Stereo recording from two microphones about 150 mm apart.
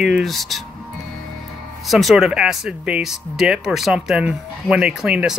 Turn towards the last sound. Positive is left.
turn(degrees=-5)  # may be behind; listen again after turning